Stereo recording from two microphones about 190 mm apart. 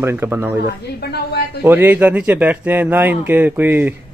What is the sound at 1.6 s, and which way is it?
Speech, 10° right (ahead or behind).